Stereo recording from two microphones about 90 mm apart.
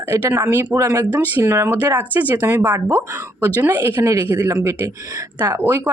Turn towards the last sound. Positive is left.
turn(degrees=-25)  # may be behind; listen again after turning